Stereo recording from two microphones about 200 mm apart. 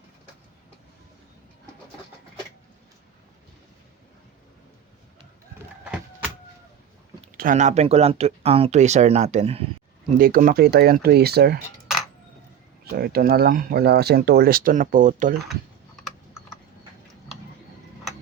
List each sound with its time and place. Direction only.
7.3 s speech: 40° right (ahead or behind)
10.2 s speech: 45° right (ahead or behind)
12.8 s speech: 50° right (ahead or behind)